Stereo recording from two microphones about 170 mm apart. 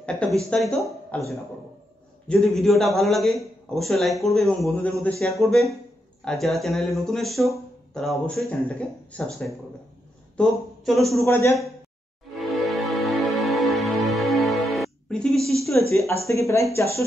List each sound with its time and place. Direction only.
0.0 s a man's voice: 5° left (ahead or behind)
10.3 s speech: centre (ahead or behind)
11.1 s a man's voice: 15° left (ahead or behind)
12.4 s music: centre (ahead or behind)
15.7 s a man's voice: 10° left (ahead or behind)